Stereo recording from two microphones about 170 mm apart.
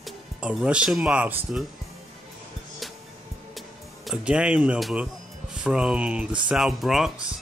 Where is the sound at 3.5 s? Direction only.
Centre (ahead or behind).